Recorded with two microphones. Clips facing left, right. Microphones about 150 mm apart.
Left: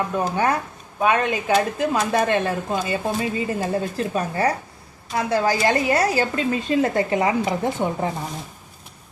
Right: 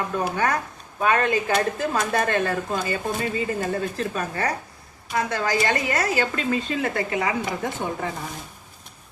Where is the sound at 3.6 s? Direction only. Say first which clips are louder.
Left 2 dB; 35° left (ahead or behind).